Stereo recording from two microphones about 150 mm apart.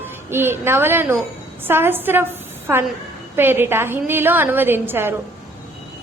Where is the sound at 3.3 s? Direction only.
15° right (ahead or behind).